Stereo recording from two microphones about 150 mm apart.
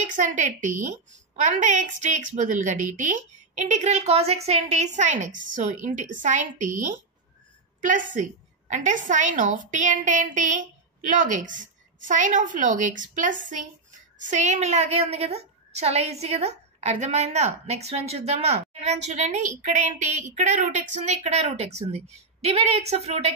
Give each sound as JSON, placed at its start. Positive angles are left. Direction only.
{"t": 0.0, "sound": "a woman's voice", "side_deg": -55}